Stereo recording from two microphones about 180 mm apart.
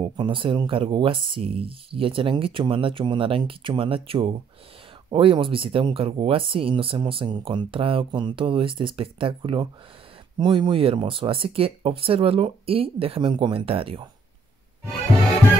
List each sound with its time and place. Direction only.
0.2 s speech: 30° right (ahead or behind)